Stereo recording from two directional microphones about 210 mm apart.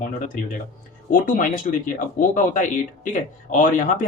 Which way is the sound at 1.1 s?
40° left (ahead or behind).